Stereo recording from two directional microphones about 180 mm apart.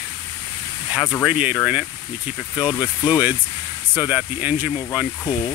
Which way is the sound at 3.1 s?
10° right (ahead or behind).